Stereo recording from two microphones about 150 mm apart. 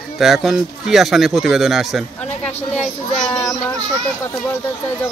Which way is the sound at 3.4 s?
25° left (ahead or behind).